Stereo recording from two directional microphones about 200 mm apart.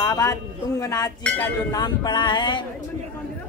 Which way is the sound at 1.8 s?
20° left (ahead or behind).